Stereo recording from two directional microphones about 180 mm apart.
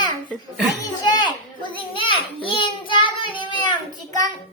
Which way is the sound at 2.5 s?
25° left (ahead or behind).